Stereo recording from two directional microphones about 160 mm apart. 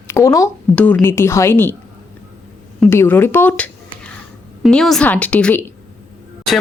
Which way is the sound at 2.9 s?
15° left (ahead or behind).